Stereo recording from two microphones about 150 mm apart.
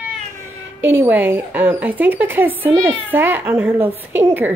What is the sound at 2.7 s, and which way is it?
Speech, 10° left (ahead or behind).